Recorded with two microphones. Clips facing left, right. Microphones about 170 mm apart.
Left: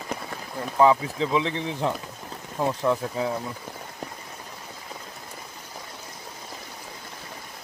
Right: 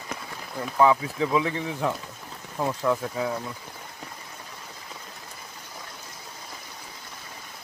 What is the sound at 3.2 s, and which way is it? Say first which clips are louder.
Speech: left 1 dB; 25° left (ahead or behind).